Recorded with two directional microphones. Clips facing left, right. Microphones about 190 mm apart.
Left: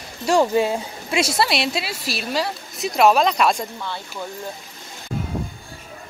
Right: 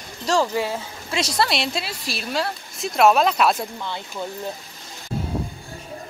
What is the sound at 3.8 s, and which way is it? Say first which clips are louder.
Speech: right 1 dB; 15° right (ahead or behind).